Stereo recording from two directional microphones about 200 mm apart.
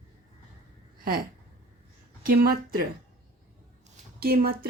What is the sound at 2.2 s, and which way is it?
Speech, 45° right (ahead or behind).